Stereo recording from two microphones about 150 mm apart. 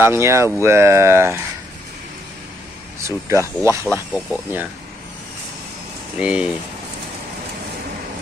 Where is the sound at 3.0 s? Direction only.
20° right (ahead or behind).